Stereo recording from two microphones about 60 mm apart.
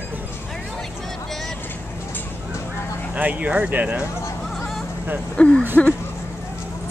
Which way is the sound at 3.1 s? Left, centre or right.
Right.